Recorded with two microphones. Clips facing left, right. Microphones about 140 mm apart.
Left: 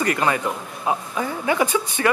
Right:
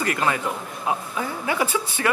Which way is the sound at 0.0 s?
15° left (ahead or behind).